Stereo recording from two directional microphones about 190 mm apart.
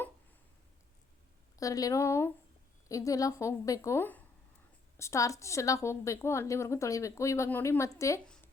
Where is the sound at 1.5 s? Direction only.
20° left (ahead or behind).